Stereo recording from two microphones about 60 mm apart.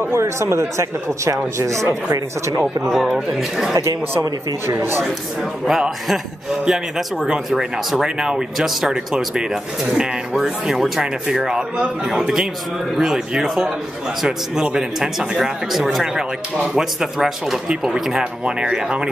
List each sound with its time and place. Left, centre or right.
0.0 s speech: right
2.8 s speech: centre
4.6 s speech: right
5.7 s speech: centre